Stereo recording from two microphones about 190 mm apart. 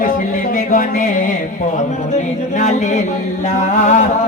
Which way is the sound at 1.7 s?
40° left (ahead or behind).